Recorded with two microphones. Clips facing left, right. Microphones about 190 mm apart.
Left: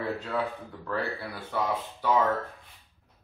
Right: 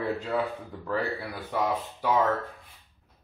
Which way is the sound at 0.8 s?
15° right (ahead or behind).